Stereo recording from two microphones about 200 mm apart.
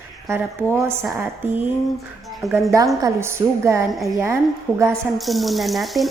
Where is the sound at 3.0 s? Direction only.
15° right (ahead or behind).